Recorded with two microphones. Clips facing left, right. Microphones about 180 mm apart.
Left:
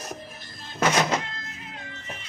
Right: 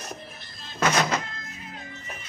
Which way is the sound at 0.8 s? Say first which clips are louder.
Left 1 dB; 20° left (ahead or behind).